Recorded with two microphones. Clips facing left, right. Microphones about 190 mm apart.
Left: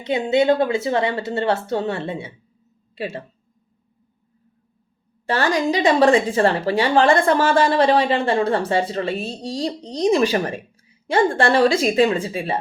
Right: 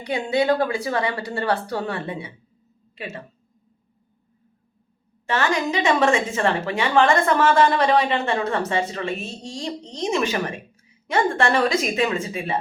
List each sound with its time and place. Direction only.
0.0 s speech: 25° left (ahead or behind)
5.2 s a woman's voice: 35° left (ahead or behind)